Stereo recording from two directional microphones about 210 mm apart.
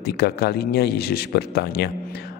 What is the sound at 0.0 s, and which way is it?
A man's voice, 50° left (ahead or behind).